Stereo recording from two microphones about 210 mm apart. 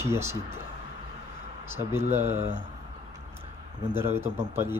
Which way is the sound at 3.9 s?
10° right (ahead or behind).